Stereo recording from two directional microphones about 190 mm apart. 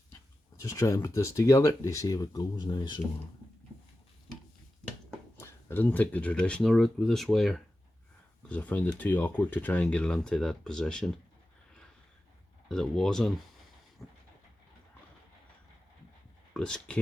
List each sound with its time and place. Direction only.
0.6 s speech: 15° left (ahead or behind)
5.4 s speech: 15° left (ahead or behind)
12.6 s speech: 5° left (ahead or behind)
14.0 s vehicle: centre (ahead or behind)
16.6 s speech: 5° left (ahead or behind)